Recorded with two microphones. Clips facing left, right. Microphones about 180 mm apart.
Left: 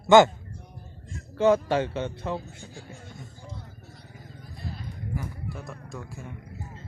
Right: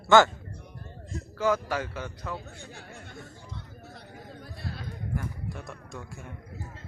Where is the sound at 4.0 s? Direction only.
70° right (ahead or behind).